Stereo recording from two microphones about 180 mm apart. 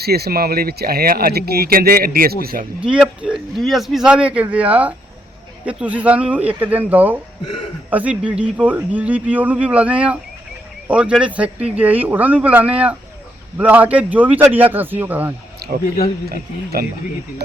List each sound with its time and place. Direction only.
0.0 s speech: 60° right (ahead or behind)
2.8 s speech: 5° right (ahead or behind)
16.8 s speech: 55° right (ahead or behind)